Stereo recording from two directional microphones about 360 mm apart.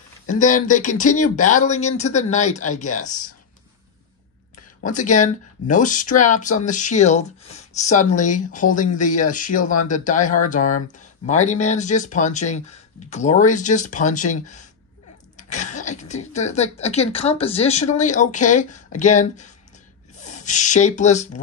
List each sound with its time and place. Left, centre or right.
0.3 s speech: left
4.8 s speech: left